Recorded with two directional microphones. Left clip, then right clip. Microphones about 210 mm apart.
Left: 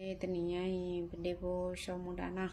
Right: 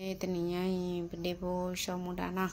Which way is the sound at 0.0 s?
20° right (ahead or behind).